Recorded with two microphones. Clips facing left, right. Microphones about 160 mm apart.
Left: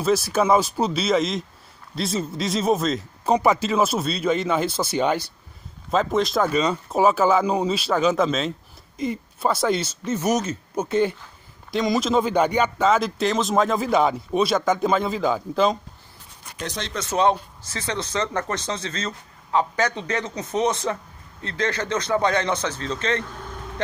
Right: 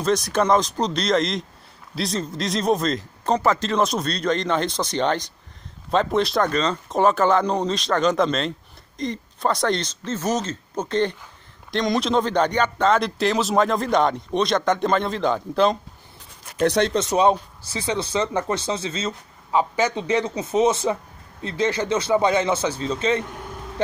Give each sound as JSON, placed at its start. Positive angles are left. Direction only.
{"t": 0.0, "sound": "speech", "side_deg": 5}
{"t": 16.5, "sound": "speech", "side_deg": -60}
{"t": 17.0, "sound": "speech", "side_deg": -15}